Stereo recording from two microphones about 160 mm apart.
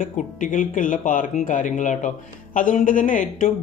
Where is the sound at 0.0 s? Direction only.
55° left (ahead or behind).